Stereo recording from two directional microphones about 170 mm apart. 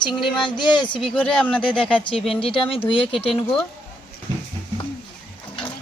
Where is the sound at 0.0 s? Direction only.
25° left (ahead or behind).